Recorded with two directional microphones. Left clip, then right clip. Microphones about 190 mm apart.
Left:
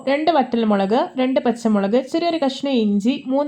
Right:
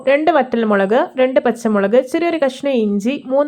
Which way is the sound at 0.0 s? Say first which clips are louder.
Right 4 dB; 20° right (ahead or behind).